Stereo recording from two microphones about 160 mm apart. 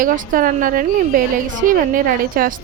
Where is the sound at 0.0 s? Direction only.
60° right (ahead or behind).